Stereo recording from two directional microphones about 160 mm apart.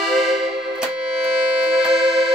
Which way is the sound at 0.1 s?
Centre (ahead or behind).